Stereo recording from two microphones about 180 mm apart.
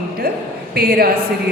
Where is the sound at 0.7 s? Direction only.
60° right (ahead or behind).